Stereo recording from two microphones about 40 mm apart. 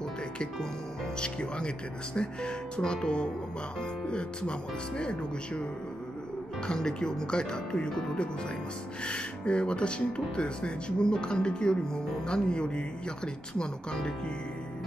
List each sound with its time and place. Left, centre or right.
1.2 s speech: left
6.7 s speech: centre
9.0 s speech: left